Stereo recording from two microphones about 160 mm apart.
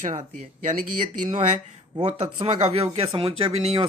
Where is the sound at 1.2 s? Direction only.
50° right (ahead or behind).